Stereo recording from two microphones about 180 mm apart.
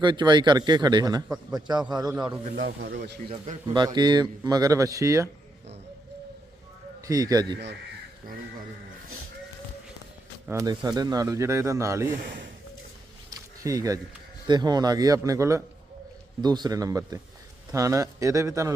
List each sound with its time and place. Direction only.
0.0 s speech: 25° right (ahead or behind)
2.1 s a man's voice: 5° right (ahead or behind)
2.6 s speech: 60° right (ahead or behind)
3.2 s a man's voice: 40° right (ahead or behind)
3.7 s speech: 20° right (ahead or behind)
7.0 s speech: 20° right (ahead or behind)
10.4 s speech: 15° right (ahead or behind)
12.2 s speech: 90° right
13.7 s speech: 20° right (ahead or behind)